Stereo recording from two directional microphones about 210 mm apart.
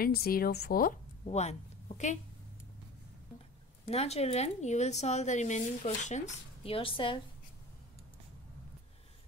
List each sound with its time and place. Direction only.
0.0 s speech: 45° left (ahead or behind)
1.2 s a woman's voice: 30° left (ahead or behind)
3.9 s speech: 30° left (ahead or behind)